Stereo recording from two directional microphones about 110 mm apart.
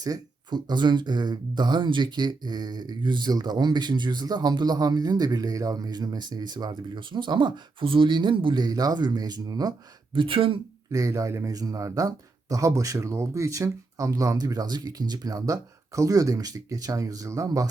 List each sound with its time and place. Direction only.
0.0 s speech: 40° right (ahead or behind)
10.2 s speech: 55° right (ahead or behind)
10.9 s speech: 30° right (ahead or behind)